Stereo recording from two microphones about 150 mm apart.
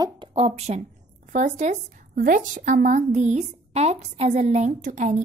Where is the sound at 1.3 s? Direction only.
50° right (ahead or behind).